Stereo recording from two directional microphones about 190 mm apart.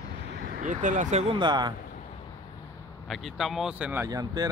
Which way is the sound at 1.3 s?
25° right (ahead or behind).